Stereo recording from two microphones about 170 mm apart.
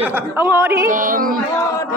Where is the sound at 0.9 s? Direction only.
55° right (ahead or behind).